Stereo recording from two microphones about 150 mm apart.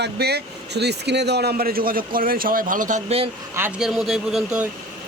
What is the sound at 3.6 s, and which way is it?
Speech, 15° right (ahead or behind).